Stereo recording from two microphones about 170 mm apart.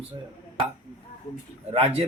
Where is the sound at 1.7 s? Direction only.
35° right (ahead or behind).